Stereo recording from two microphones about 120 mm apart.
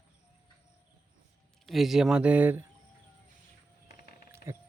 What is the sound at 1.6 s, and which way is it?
Speech, centre (ahead or behind).